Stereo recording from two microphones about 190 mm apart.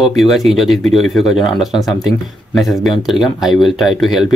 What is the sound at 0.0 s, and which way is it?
Speech, centre (ahead or behind).